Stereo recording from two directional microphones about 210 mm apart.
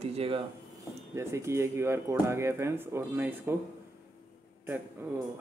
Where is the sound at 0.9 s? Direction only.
15° right (ahead or behind).